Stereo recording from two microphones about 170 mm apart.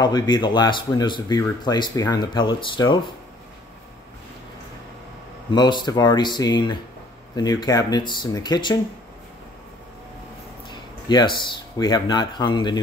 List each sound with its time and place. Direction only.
0.0 s speech: 25° left (ahead or behind)
5.5 s speech: 25° left (ahead or behind)
10.7 s speech: 25° left (ahead or behind)